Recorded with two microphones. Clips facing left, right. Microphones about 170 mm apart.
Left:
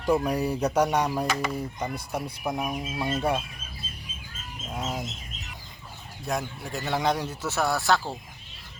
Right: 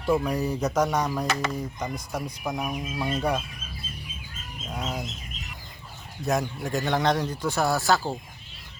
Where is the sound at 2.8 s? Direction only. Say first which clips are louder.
Even; 20° left (ahead or behind).